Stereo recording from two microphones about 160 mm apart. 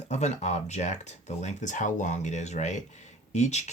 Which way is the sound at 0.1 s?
45° left (ahead or behind).